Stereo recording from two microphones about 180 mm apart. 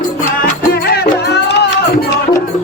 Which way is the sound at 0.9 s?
65° left (ahead or behind).